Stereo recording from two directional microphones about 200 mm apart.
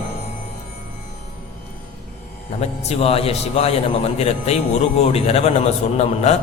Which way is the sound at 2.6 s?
30° left (ahead or behind).